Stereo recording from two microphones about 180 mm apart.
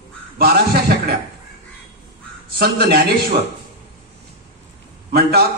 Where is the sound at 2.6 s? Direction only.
60° right (ahead or behind).